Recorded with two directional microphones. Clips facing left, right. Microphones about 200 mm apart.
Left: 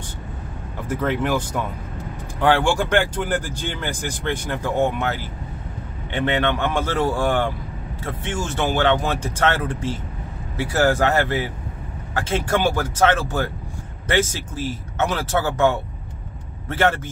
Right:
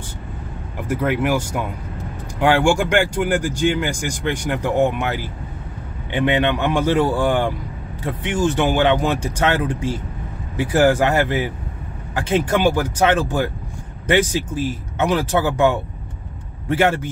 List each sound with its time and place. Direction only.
0.8 s speech: 10° right (ahead or behind)